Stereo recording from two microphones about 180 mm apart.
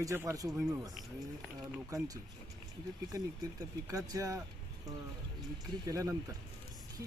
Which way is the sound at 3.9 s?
20° right (ahead or behind).